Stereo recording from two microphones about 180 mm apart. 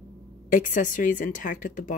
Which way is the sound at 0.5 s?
45° left (ahead or behind).